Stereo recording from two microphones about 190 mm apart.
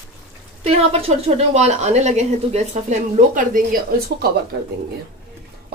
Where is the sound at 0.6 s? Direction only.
30° right (ahead or behind).